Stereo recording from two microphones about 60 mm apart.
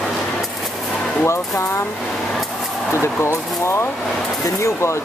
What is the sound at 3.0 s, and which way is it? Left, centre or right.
Speech, left.